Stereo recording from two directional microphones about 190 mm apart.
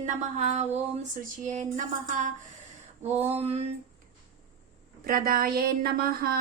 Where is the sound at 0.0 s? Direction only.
40° right (ahead or behind).